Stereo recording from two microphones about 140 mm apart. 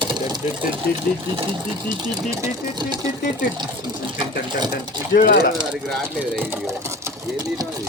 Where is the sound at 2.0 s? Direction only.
25° right (ahead or behind).